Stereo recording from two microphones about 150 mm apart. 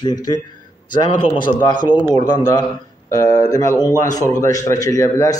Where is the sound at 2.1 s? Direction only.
25° left (ahead or behind).